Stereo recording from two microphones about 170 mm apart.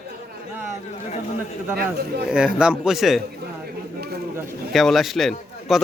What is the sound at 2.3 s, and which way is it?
Speech, 5° right (ahead or behind).